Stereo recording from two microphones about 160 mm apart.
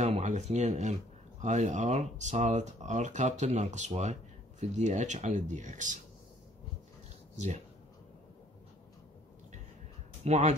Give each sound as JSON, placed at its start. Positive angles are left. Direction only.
{"t": 0.0, "sound": "speech", "side_deg": -45}
{"t": 7.3, "sound": "speech", "side_deg": -45}
{"t": 10.2, "sound": "speech", "side_deg": -45}